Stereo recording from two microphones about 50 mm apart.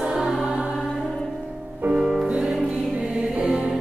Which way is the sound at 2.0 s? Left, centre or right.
Centre.